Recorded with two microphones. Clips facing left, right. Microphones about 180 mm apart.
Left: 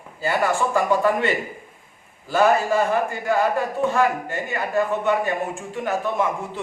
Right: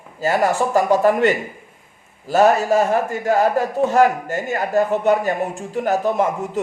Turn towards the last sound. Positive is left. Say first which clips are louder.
# right 4 dB
turn(degrees=-40)  # may be behind; listen again after turning